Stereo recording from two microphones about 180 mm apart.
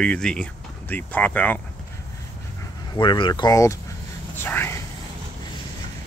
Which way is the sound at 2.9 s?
25° left (ahead or behind).